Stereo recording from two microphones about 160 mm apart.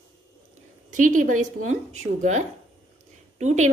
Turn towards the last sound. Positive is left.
turn(degrees=-45)  # may be behind; listen again after turning